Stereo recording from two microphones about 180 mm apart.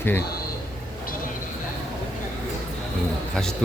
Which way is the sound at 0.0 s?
10° left (ahead or behind).